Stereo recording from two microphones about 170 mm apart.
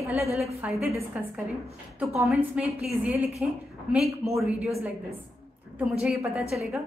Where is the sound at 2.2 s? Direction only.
5° right (ahead or behind).